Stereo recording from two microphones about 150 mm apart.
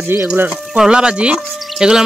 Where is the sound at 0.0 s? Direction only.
15° right (ahead or behind).